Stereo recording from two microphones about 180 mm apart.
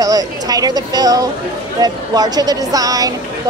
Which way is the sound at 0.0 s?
20° right (ahead or behind).